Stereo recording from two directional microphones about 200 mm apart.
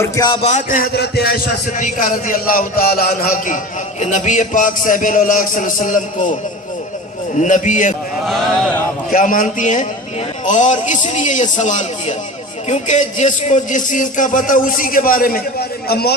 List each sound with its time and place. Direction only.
0.0 s speech: 20° left (ahead or behind)
0.4 s speech: 40° left (ahead or behind)
0.9 s a man's voice: 55° left (ahead or behind)
7.3 s speech: 40° left (ahead or behind)
8.3 s speech: 10° left (ahead or behind)
9.1 s speech: 40° left (ahead or behind)